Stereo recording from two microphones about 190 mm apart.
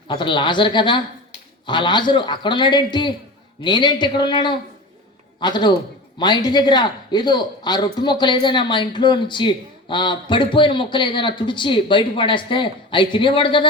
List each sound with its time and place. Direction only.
0.1 s a man's voice: 25° left (ahead or behind)